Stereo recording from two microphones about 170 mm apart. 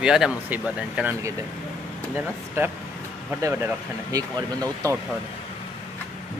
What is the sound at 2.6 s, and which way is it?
Speech, 15° right (ahead or behind).